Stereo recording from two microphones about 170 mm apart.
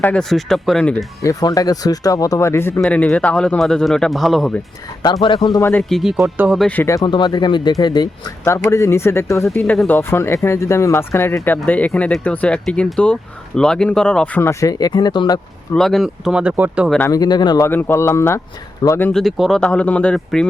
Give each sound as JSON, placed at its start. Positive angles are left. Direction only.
{"t": 0.0, "sound": "speech", "side_deg": 5}
{"t": 1.2, "sound": "speech", "side_deg": 20}
{"t": 5.0, "sound": "speech", "side_deg": 25}
{"t": 5.9, "sound": "speech", "side_deg": 0}
{"t": 6.6, "sound": "speech", "side_deg": 10}
{"t": 15.7, "sound": "speech", "side_deg": 0}
{"t": 17.1, "sound": "speech", "side_deg": 25}
{"t": 17.7, "sound": "speech", "side_deg": 10}
{"t": 19.2, "sound": "speech", "side_deg": 0}